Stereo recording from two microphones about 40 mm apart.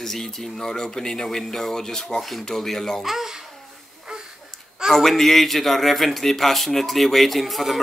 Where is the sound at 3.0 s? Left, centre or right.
Centre.